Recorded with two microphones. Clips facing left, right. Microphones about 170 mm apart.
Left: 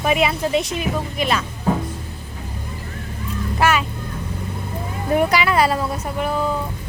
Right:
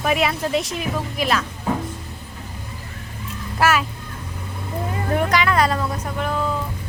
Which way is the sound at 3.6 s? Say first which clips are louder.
Even; centre (ahead or behind).